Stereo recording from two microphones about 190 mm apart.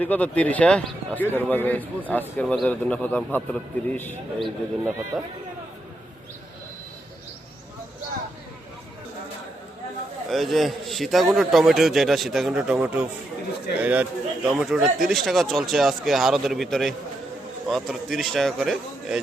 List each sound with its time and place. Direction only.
0.0 s speech: 10° left (ahead or behind)
4.8 s speech: 10° right (ahead or behind)
10.2 s speech: centre (ahead or behind)